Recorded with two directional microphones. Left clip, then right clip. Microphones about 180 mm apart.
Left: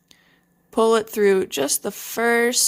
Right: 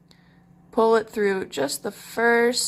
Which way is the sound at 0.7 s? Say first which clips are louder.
Left 1 dB; 45° left (ahead or behind).